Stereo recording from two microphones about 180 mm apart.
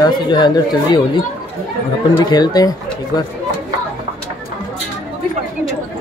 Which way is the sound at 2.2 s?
20° left (ahead or behind).